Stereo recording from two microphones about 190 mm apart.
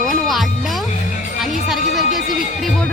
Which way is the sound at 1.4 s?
Centre (ahead or behind).